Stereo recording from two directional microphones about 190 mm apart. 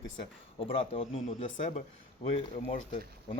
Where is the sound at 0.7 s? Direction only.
30° left (ahead or behind).